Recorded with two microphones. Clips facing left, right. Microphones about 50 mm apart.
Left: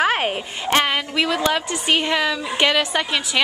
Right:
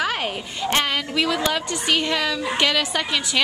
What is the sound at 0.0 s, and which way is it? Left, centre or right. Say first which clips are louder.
Speech: left 5 dB; left.